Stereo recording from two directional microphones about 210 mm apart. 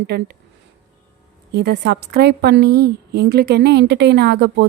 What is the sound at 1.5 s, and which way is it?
A woman's voice, 50° right (ahead or behind).